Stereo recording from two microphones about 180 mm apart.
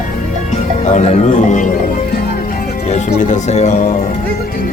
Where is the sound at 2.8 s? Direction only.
40° left (ahead or behind).